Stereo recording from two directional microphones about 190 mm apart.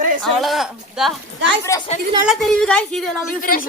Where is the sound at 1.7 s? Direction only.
15° left (ahead or behind).